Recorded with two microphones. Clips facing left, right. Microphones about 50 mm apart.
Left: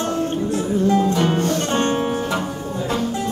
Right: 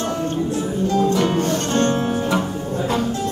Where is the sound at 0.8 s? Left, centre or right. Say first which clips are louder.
Even; centre.